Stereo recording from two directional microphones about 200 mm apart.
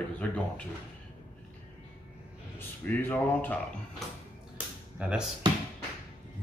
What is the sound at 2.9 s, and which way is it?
Speech, 10° left (ahead or behind).